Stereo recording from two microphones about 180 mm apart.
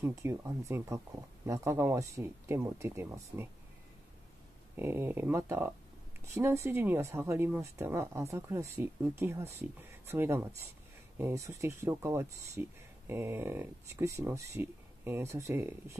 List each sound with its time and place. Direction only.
0.0 s speech: 15° right (ahead or behind)
4.7 s speech: 10° right (ahead or behind)